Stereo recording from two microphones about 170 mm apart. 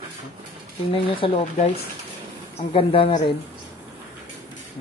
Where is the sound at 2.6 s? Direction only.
35° left (ahead or behind).